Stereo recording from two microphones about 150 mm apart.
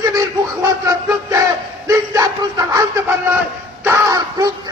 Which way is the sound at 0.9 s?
20° right (ahead or behind).